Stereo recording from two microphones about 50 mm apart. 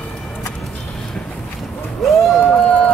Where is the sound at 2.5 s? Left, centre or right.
Left.